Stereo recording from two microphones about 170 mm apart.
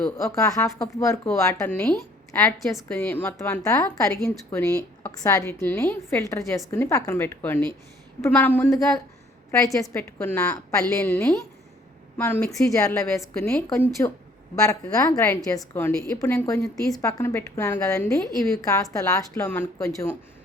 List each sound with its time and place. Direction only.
0.3 s speech: 20° left (ahead or behind); by 2.8 s centre (ahead or behind)
2.9 s a woman's voice: 10° left (ahead or behind)